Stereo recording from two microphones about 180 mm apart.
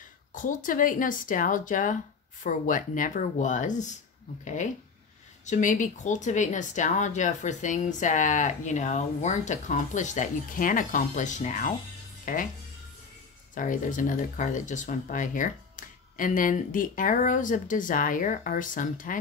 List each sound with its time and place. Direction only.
0.3 s speech: 45° left (ahead or behind)
5.4 s speech: 45° left (ahead or behind)
13.6 s speech: 45° left (ahead or behind)